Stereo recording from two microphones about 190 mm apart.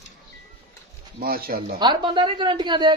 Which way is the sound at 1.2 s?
50° right (ahead or behind).